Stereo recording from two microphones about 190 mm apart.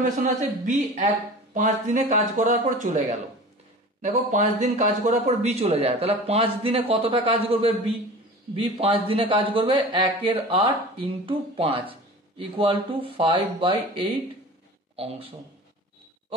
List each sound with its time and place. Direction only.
0.0 s a man's voice: 40° right (ahead or behind)